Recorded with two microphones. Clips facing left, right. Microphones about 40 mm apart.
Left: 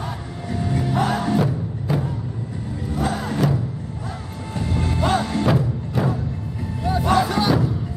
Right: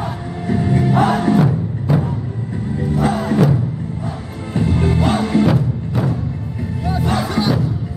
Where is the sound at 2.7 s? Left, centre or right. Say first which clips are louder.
Right 6 dB; centre.